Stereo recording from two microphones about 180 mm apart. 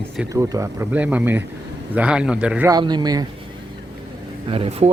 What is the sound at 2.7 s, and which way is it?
Speech, 25° right (ahead or behind).